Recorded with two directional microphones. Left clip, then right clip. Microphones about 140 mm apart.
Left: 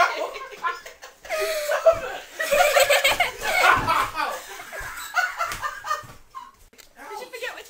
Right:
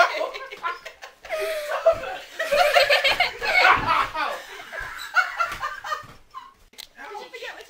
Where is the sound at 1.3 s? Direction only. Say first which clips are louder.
Left 2 dB; 10° left (ahead or behind).